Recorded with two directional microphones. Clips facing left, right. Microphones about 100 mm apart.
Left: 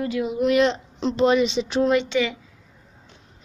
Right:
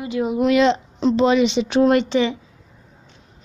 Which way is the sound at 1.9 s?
40° right (ahead or behind).